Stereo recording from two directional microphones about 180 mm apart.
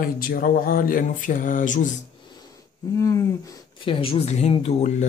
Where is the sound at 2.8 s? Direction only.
15° left (ahead or behind); by 5.1 s 35° left (ahead or behind).